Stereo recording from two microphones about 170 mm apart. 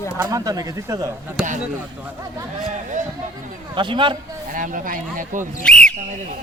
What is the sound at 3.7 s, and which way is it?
Speech, 30° right (ahead or behind).